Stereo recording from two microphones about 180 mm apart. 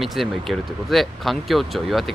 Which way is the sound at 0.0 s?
Centre (ahead or behind).